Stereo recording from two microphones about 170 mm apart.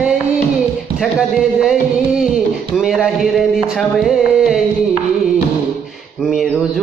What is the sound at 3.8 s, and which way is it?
Music, centre (ahead or behind).